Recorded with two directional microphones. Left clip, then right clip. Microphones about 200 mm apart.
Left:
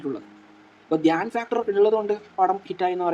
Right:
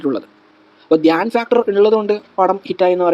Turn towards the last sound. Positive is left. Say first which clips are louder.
# right 10 dB
turn(degrees=-40)  # may be behind; listen again after turning